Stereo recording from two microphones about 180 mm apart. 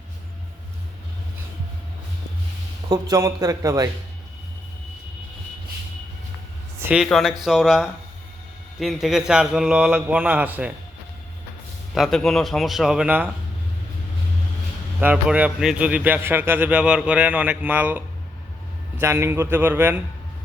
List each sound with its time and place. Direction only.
2.9 s a man's voice: 20° right (ahead or behind)
6.7 s a man's voice: 10° right (ahead or behind)
11.9 s a man's voice: centre (ahead or behind)
15.0 s a man's voice: 5° right (ahead or behind)